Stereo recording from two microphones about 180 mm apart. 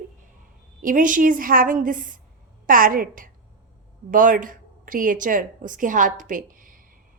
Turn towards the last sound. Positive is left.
turn(degrees=-50)  # may be behind; listen again after turning